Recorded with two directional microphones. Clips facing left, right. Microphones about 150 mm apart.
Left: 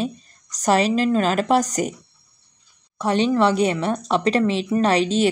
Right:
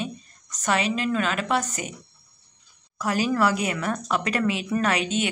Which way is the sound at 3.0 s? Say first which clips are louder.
Left 5 dB; 30° left (ahead or behind).